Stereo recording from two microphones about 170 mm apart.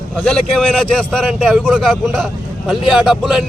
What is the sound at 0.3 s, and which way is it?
A man's voice, 5° left (ahead or behind).